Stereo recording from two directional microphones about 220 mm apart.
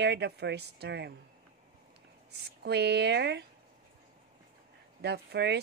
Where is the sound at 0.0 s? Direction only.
50° right (ahead or behind).